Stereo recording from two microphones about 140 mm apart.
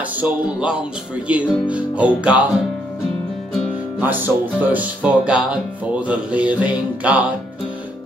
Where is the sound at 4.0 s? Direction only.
10° right (ahead or behind).